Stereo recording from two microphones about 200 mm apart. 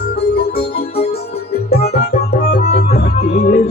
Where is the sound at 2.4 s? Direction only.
50° left (ahead or behind).